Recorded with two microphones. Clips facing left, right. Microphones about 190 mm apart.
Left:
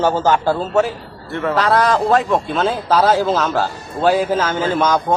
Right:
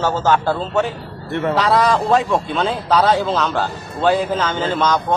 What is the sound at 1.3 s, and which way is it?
Speech, 20° right (ahead or behind).